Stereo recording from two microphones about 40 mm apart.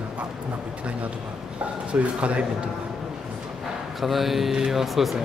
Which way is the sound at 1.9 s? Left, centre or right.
Right.